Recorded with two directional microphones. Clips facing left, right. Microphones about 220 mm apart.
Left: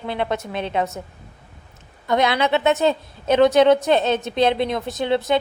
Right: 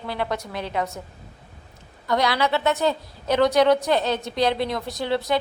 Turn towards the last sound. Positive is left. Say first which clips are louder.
# left 4 dB
turn(degrees=20)  # may be behind; listen again after turning